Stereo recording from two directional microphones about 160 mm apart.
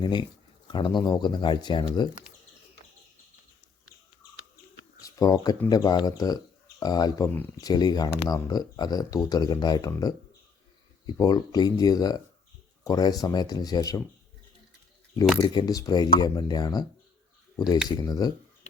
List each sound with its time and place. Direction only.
0.0 s speech: 30° left (ahead or behind)
5.0 s speech: 20° left (ahead or behind)
15.5 s speech: 25° left (ahead or behind)
17.8 s speech: 25° left (ahead or behind)